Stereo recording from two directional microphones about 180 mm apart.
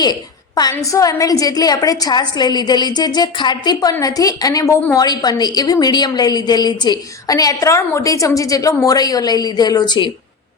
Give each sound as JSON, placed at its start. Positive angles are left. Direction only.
{"t": 0.0, "sound": "a woman's voice", "side_deg": 20}